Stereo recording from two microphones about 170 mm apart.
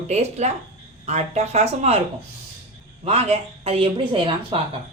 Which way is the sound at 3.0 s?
35° right (ahead or behind).